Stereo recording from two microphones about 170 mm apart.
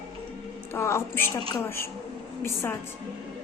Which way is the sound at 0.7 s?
15° left (ahead or behind).